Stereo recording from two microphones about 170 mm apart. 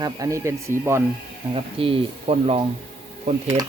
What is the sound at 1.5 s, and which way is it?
Speech, 30° right (ahead or behind).